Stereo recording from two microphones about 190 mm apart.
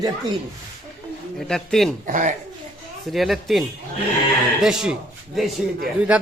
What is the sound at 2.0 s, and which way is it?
Speech, 45° right (ahead or behind).